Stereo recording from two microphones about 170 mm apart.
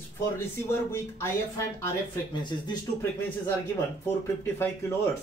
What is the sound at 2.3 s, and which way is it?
Speech, 25° left (ahead or behind).